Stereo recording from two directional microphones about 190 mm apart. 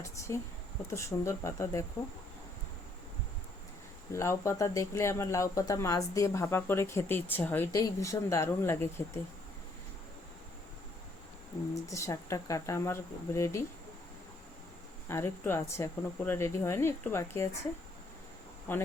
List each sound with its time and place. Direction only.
0.9 s speech: 15° left (ahead or behind)
4.1 s speech: 15° left (ahead or behind)
11.7 s speech: 15° left (ahead or behind)
15.1 s speech: 15° left (ahead or behind)
18.7 s speech: 10° left (ahead or behind)